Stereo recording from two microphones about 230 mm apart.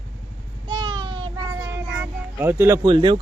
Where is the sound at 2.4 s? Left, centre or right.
Centre.